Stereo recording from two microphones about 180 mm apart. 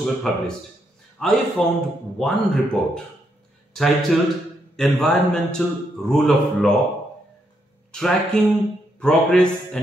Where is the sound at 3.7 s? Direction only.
Centre (ahead or behind).